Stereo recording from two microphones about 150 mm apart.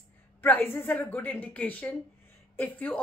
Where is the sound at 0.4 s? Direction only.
15° left (ahead or behind).